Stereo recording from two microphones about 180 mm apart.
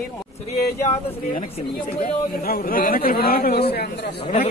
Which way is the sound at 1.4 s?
35° left (ahead or behind).